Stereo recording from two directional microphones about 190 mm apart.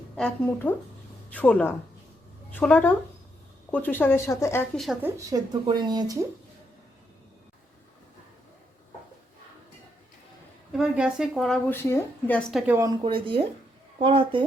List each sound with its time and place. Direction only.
0.2 s speech: 10° left (ahead or behind)
5.0 s speech: 15° right (ahead or behind)
10.7 s speech: 5° right (ahead or behind)
12.7 s speech: 20° right (ahead or behind)